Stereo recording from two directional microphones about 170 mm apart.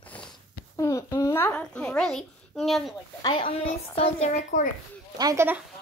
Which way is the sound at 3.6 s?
35° left (ahead or behind).